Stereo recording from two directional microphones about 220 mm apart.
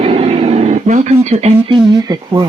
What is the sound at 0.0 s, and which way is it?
Speech, 25° right (ahead or behind).